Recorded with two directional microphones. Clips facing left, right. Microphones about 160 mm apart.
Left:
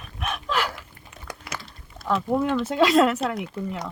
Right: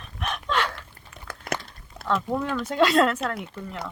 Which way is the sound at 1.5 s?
50° right (ahead or behind).